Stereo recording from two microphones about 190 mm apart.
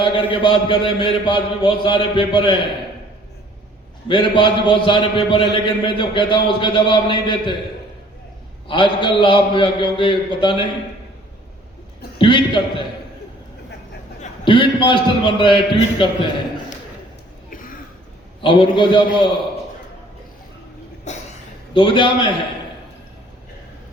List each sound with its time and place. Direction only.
0.0 s a man's voice: 25° left (ahead or behind)
4.1 s a man's voice: 25° left (ahead or behind)
8.6 s a man's voice: 25° left (ahead or behind)
12.1 s a man's voice: 25° left (ahead or behind)
14.4 s a man's voice: 25° left (ahead or behind)
17.5 s a sound: 45° left (ahead or behind)
18.4 s a man's voice: 25° left (ahead or behind)
21.1 s a sound: 35° left (ahead or behind)
21.7 s a man's voice: 25° left (ahead or behind)